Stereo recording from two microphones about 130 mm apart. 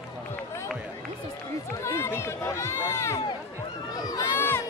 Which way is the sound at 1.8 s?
20° left (ahead or behind).